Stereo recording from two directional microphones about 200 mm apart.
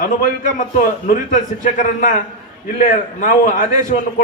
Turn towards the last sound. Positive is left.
turn(degrees=40)  # may be behind; listen again after turning